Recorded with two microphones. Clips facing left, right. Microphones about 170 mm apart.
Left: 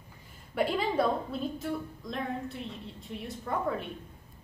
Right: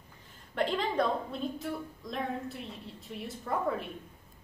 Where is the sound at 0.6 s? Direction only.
5° left (ahead or behind).